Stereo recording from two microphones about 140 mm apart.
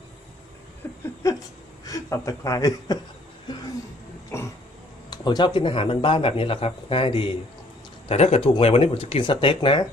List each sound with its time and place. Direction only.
0.8 s a sound: 15° left (ahead or behind)
1.8 s a man's voice: 25° left (ahead or behind)
4.3 s throat clearing: 20° left (ahead or behind)
5.1 s speech: 30° left (ahead or behind)